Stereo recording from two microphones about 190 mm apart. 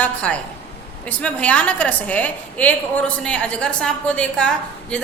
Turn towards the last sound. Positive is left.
turn(degrees=5)  # may be behind; listen again after turning